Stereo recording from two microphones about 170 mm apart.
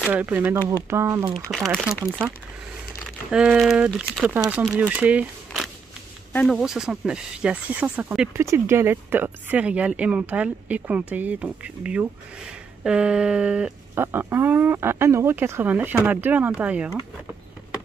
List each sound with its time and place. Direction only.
0.1 s speech: 10° right (ahead or behind)
1.5 s speech: centre (ahead or behind)
3.3 s speech: 5° right (ahead or behind)